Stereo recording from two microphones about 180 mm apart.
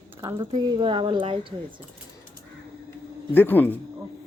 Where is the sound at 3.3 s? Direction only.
10° left (ahead or behind).